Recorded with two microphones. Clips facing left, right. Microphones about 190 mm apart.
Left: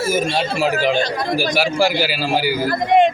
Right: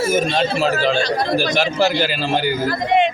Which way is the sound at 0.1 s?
10° left (ahead or behind).